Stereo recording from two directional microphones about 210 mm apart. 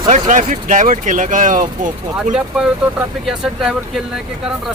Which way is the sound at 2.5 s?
Centre (ahead or behind).